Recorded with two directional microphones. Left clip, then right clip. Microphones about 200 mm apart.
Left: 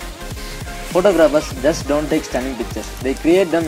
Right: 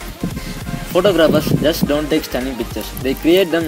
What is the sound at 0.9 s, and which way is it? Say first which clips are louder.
Speech: even; 35° right (ahead or behind).